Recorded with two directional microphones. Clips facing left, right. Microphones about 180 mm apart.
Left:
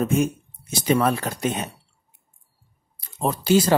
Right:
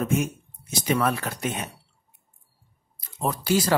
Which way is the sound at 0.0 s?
30° left (ahead or behind).